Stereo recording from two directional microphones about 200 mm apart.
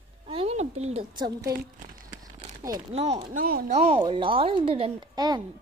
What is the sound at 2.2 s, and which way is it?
Crumpling, 20° right (ahead or behind).